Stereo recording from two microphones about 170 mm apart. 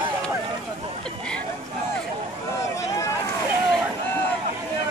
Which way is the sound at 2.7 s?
20° left (ahead or behind).